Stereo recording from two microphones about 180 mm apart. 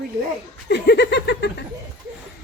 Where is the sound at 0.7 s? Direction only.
65° left (ahead or behind).